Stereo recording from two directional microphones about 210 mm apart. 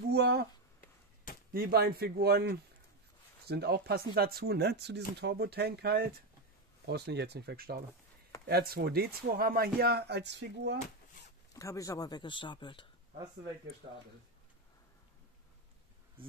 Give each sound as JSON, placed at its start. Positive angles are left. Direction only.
{"t": 0.1, "sound": "a sound", "side_deg": -50}
{"t": 1.5, "sound": "speech", "side_deg": -45}
{"t": 11.5, "sound": "speech", "side_deg": 15}